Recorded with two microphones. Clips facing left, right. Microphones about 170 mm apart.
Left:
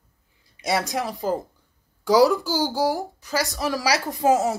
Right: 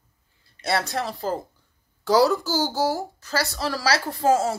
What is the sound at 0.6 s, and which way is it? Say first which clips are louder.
Speech: left 1 dB; 15° left (ahead or behind).